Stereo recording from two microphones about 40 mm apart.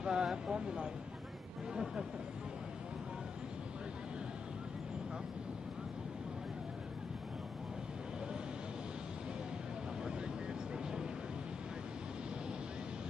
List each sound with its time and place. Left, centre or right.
0.0 s speech: centre